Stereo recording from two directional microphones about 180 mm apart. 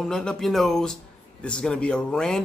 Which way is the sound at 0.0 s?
5° left (ahead or behind).